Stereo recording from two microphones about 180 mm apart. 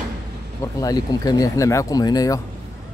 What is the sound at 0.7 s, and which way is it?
Speech, 20° left (ahead or behind).